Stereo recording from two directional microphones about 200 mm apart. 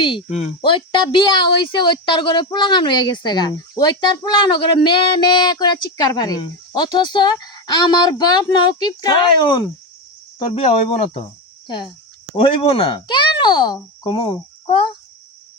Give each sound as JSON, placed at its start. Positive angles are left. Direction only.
{"t": 0.0, "sound": "speech", "side_deg": 30}
{"t": 12.4, "sound": "speech", "side_deg": 25}